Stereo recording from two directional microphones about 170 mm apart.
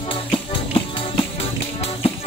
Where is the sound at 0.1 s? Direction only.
30° left (ahead or behind).